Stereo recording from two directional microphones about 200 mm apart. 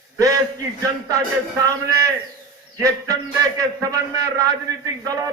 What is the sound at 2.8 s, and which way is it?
A man's voice, 15° right (ahead or behind).